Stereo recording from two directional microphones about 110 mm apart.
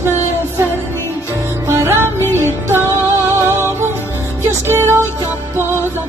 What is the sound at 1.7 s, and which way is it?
Music, 25° right (ahead or behind).